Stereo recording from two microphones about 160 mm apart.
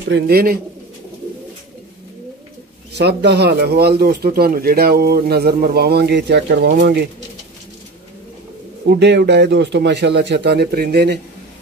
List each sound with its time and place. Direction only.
0.3 s speech: 70° right (ahead or behind)
2.9 s speech: 90° right
8.9 s speech: 90° right